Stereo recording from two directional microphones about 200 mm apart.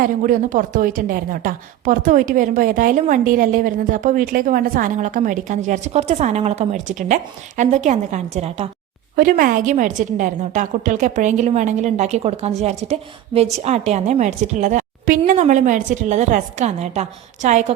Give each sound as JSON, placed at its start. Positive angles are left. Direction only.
{"t": 0.0, "sound": "speech", "side_deg": -40}
{"t": 9.1, "sound": "speech", "side_deg": -45}